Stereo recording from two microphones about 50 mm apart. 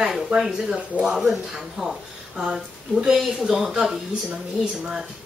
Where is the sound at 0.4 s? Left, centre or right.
Centre.